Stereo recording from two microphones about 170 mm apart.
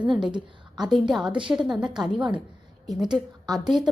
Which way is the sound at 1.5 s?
5° right (ahead or behind).